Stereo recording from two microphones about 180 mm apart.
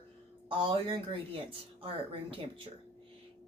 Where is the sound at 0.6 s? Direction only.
25° right (ahead or behind).